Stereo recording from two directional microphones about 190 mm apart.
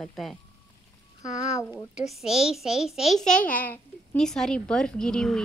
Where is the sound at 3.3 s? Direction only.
45° left (ahead or behind).